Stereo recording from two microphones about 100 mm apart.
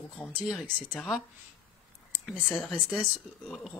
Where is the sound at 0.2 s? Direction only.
15° left (ahead or behind).